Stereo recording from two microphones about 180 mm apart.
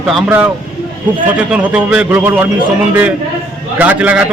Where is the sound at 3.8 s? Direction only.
10° right (ahead or behind).